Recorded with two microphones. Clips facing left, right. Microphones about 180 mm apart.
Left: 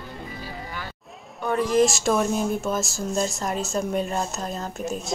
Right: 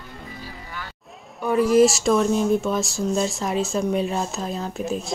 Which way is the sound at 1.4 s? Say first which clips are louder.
Right 4 dB; 5° right (ahead or behind).